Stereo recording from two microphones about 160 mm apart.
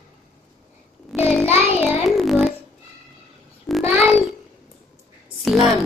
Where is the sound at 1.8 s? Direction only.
Centre (ahead or behind).